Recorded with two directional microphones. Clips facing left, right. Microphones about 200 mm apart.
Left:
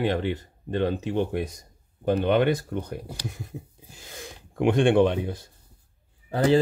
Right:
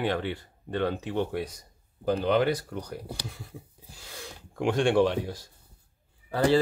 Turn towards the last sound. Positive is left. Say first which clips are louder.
# left 2 dB
turn(degrees=20)  # may be behind; listen again after turning